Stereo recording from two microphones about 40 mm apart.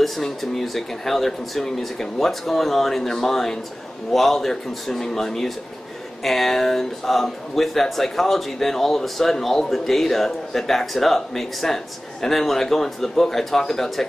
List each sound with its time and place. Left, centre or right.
0.0 s speech: centre